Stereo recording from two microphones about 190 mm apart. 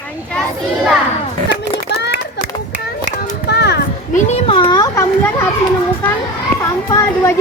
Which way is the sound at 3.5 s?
60° left (ahead or behind).